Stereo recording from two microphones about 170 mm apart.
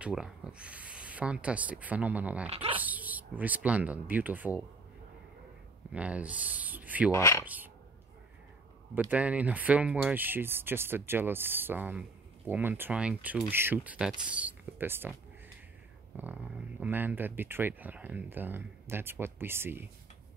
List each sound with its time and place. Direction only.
0.0 s speech: 5° right (ahead or behind)
2.4 s speech: 35° right (ahead or behind)
2.8 s speech: 10° right (ahead or behind)
5.9 s speech: 10° right (ahead or behind)
7.1 s speech: 15° left (ahead or behind)
7.4 s speech: 10° right (ahead or behind)
8.9 s speech: 10° right (ahead or behind)
16.8 s speech: 10° right (ahead or behind)